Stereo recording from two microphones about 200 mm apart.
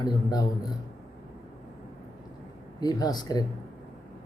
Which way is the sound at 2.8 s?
20° left (ahead or behind).